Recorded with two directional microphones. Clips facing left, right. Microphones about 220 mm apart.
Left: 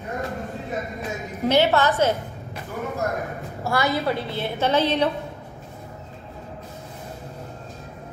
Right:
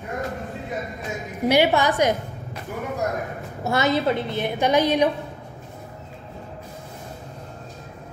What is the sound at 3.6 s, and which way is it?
A woman's voice, 20° right (ahead or behind).